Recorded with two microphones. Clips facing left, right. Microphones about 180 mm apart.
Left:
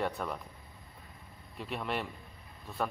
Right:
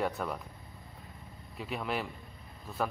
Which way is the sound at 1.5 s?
Centre (ahead or behind).